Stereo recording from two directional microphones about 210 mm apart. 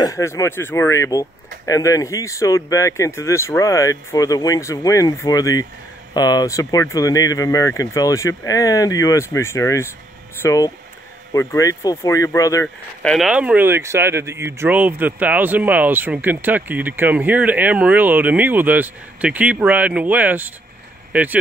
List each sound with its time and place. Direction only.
0.0 s speech: 15° left (ahead or behind)
12.6 s speech: 5° left (ahead or behind)